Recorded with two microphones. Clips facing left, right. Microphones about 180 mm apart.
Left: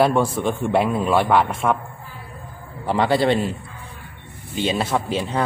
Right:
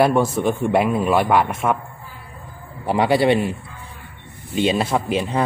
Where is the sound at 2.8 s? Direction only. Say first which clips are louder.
Right 2 dB; 10° right (ahead or behind).